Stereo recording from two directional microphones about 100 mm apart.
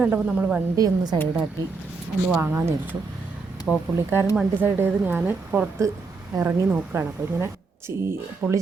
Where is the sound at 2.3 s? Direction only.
20° right (ahead or behind).